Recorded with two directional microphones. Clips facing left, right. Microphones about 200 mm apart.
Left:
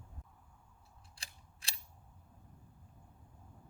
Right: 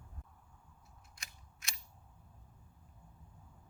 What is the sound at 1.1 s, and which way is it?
Scissors, 30° left (ahead or behind).